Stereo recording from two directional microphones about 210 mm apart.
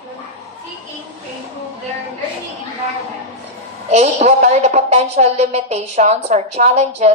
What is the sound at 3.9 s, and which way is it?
A woman's voice, 30° right (ahead or behind).